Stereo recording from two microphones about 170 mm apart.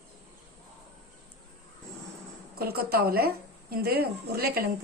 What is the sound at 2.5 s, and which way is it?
Speech, 65° right (ahead or behind).